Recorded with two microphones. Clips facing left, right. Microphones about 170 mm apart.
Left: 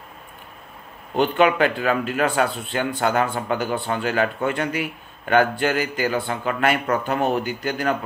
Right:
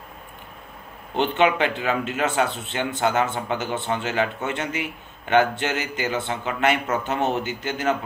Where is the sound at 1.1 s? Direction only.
25° right (ahead or behind).